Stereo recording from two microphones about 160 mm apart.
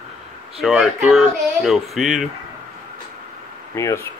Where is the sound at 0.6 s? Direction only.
Centre (ahead or behind).